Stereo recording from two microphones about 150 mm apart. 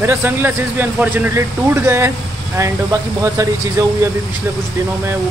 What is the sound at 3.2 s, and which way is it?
Speech, 20° right (ahead or behind).